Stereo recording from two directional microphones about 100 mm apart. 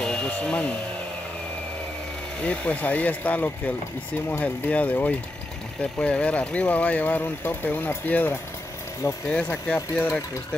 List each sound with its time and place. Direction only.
0.0 s speech: 10° left (ahead or behind)
2.4 s speech: 15° left (ahead or behind)
9.8 s speech: 25° left (ahead or behind)